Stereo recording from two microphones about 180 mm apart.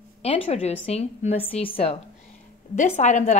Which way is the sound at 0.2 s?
35° left (ahead or behind).